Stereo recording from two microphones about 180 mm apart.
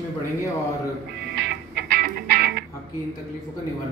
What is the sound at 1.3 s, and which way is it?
Music, 65° right (ahead or behind).